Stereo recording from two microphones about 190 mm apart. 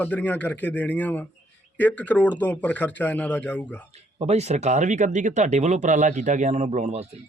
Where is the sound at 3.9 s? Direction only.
35° right (ahead or behind).